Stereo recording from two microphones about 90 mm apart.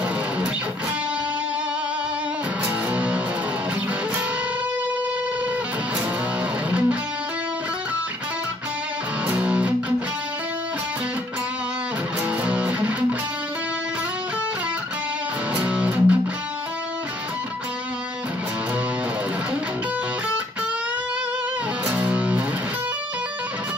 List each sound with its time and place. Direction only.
2.6 s music: 15° right (ahead or behind)
9.3 s music: 15° right (ahead or behind)
12.4 s music: 15° right (ahead or behind)
15.6 s music: 15° right (ahead or behind)
21.8 s music: 15° right (ahead or behind)